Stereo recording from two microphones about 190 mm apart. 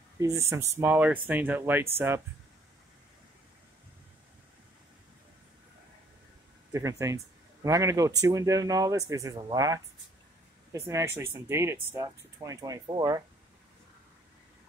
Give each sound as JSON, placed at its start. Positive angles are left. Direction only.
{"t": 0.2, "sound": "a man's voice", "side_deg": -15}
{"t": 6.7, "sound": "a man's voice", "side_deg": -15}